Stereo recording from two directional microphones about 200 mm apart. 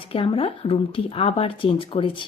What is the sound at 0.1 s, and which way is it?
A woman's voice, 25° left (ahead or behind).